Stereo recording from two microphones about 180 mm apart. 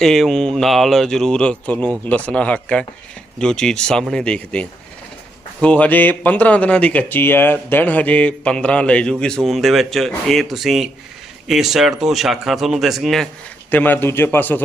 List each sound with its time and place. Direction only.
0.0 s speech: 5° left (ahead or behind)
5.6 s speech: 5° left (ahead or behind)